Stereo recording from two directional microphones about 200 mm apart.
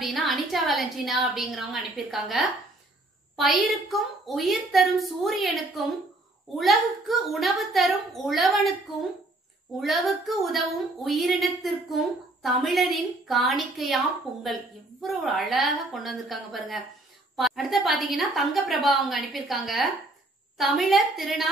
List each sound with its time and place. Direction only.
0.0 s a woman's voice: centre (ahead or behind)
6.6 s a woman's voice: centre (ahead or behind)
9.8 s a woman's voice: centre (ahead or behind)